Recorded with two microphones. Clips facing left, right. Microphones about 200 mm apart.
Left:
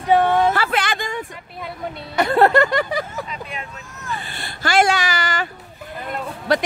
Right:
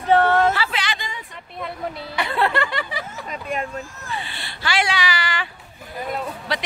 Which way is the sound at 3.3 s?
45° right (ahead or behind).